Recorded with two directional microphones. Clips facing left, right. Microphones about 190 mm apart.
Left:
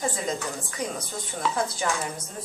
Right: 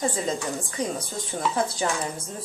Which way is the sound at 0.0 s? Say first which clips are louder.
Right 2 dB; 30° right (ahead or behind).